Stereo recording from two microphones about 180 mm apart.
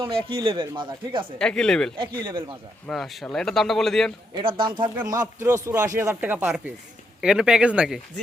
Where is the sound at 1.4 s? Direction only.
5° left (ahead or behind).